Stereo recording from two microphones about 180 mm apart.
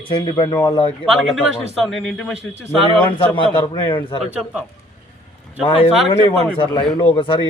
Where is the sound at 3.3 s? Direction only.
30° left (ahead or behind).